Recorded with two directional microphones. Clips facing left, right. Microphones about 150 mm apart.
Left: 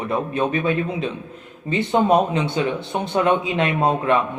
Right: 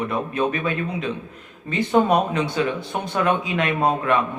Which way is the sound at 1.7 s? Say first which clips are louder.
Left 1 dB; 25° left (ahead or behind).